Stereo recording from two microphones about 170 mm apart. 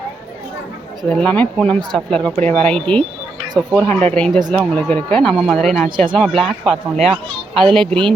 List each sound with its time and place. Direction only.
1.1 s speech: 10° left (ahead or behind)